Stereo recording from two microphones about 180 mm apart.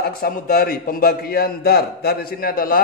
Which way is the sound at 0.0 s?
55° left (ahead or behind).